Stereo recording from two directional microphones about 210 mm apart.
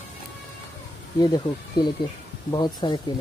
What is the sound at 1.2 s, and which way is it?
Speech, 20° left (ahead or behind).